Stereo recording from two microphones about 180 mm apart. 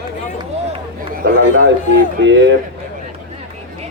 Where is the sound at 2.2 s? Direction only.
90° right.